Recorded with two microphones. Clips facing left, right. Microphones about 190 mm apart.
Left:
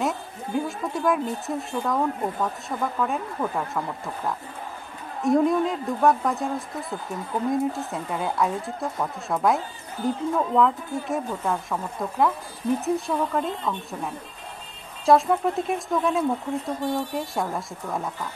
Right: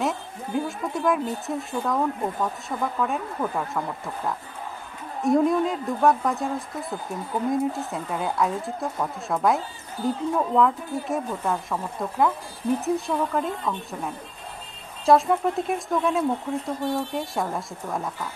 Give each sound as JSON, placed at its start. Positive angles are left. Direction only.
{"t": 0.0, "sound": "speech", "side_deg": 0}